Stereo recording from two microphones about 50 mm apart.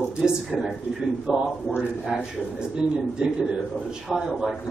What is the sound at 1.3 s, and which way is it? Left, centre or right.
A man's voice, centre.